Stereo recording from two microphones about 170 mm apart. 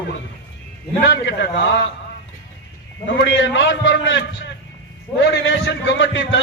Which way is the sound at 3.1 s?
90° left.